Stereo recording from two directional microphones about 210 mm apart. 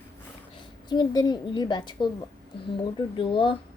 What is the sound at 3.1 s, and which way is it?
Speech, 25° left (ahead or behind).